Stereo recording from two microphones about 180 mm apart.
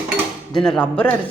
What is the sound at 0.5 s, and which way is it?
Speech, 5° left (ahead or behind).